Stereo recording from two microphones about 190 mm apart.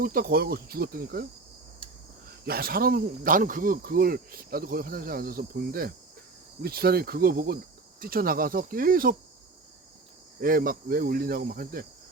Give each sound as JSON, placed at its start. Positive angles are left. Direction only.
{"t": 0.0, "sound": "speech", "side_deg": -50}
{"t": 2.4, "sound": "speech", "side_deg": -50}
{"t": 10.4, "sound": "speech", "side_deg": -50}